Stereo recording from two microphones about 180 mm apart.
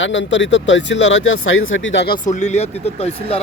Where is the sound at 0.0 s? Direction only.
90° left.